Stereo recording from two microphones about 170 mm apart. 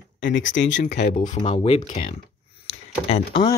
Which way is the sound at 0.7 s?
45° left (ahead or behind).